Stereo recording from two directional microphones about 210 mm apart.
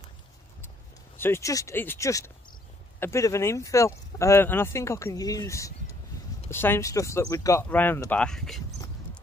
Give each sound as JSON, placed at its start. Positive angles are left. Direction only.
{"t": 1.1, "sound": "speech", "side_deg": 10}